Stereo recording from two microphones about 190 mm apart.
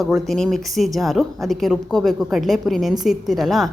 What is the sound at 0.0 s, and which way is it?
A woman's voice, centre (ahead or behind).